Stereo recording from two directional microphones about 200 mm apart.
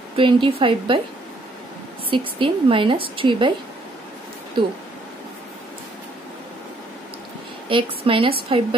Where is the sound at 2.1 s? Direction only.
25° right (ahead or behind).